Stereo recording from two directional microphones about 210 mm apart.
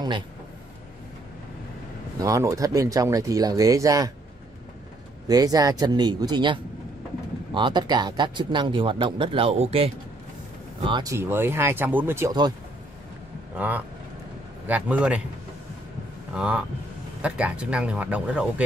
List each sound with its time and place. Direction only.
2.1 s speech: 15° right (ahead or behind)
5.3 s speech: 20° right (ahead or behind)
10.9 s speech: 20° right (ahead or behind)
13.6 s speech: 5° right (ahead or behind)
16.3 s speech: 5° right (ahead or behind)